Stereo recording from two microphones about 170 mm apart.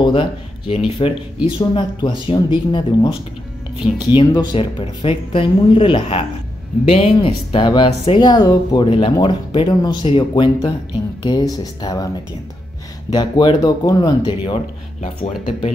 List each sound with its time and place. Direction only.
0.0 s speech: 30° left (ahead or behind)
13.1 s speech: 25° left (ahead or behind)